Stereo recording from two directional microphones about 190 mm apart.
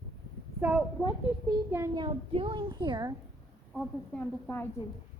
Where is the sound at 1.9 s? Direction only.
25° right (ahead or behind).